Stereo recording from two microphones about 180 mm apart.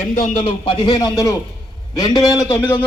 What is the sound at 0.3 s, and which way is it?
A man's voice, 30° left (ahead or behind).